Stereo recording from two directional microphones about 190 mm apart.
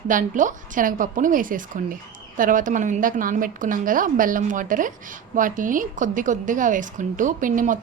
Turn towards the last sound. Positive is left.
turn(degrees=-45)  # may be behind; listen again after turning